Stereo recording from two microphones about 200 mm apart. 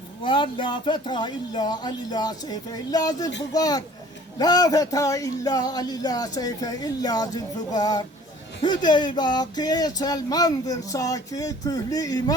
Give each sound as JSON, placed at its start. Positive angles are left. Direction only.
{"t": 0.2, "sound": "speech", "side_deg": 25}